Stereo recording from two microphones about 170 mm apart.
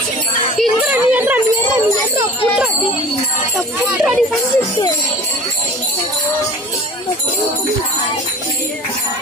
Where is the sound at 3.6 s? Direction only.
5° right (ahead or behind).